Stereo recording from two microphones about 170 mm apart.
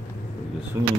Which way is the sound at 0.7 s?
15° right (ahead or behind).